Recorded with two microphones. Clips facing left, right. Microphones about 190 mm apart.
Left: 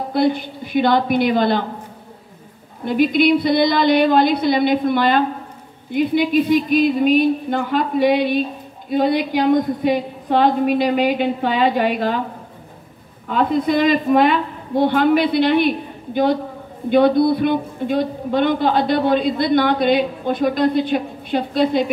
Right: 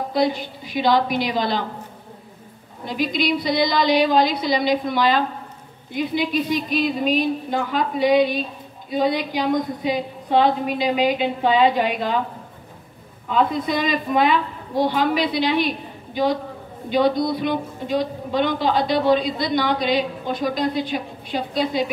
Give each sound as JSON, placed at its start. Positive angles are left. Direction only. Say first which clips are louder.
{"t": 0.1, "sound": "a woman's voice", "louder": "left 4 dB", "side_deg": 55}
{"t": 2.8, "sound": "a woman's voice", "louder": "left 7 dB", "side_deg": 55}
{"t": 13.3, "sound": "a woman's voice", "louder": "left 3 dB", "side_deg": 50}